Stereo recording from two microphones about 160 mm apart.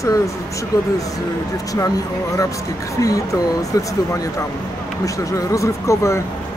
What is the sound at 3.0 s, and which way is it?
Speech, 20° left (ahead or behind).